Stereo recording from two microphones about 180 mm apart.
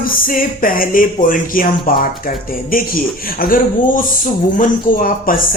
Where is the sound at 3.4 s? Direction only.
50° left (ahead or behind).